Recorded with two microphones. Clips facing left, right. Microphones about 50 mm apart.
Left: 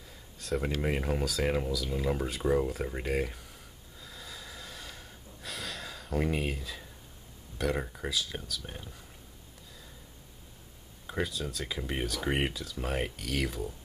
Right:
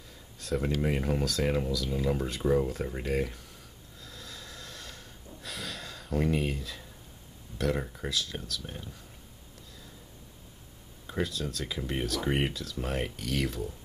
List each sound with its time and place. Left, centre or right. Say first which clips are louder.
0.4 s speech: right 2 dB; centre
4.0 s snort: even; centre
7.5 s speech: right 1 dB; centre
11.1 s speech: right 1 dB; centre